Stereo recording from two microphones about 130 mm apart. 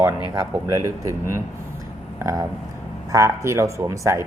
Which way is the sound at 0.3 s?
20° right (ahead or behind).